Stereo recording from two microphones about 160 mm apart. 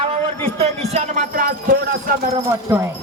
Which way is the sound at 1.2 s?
60° right (ahead or behind).